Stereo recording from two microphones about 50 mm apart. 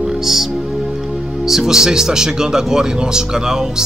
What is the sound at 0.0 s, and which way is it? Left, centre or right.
Music, centre.